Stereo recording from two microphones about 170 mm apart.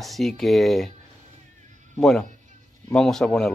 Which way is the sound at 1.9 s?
Centre (ahead or behind).